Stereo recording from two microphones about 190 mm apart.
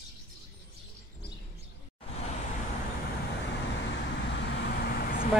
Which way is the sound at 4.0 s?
65° left (ahead or behind).